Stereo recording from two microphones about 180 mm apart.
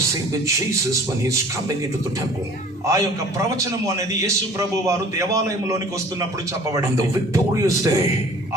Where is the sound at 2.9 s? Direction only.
15° right (ahead or behind).